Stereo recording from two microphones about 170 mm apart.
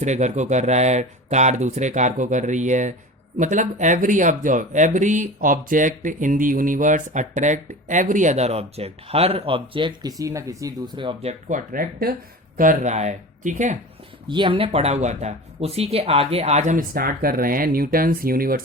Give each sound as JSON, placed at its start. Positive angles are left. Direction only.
{"t": 0.0, "sound": "speech", "side_deg": -45}
{"t": 12.5, "sound": "speech", "side_deg": -50}
{"t": 14.3, "sound": "speech", "side_deg": -30}